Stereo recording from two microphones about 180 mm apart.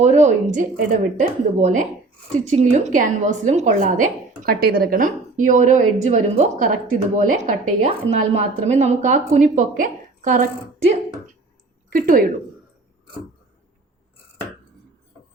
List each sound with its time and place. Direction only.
0.0 s a woman's voice: 40° right (ahead or behind)
11.9 s a woman's voice: 50° right (ahead or behind)